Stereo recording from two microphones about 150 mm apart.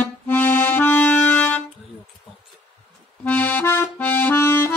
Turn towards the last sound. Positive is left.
turn(degrees=15)  # may be behind; listen again after turning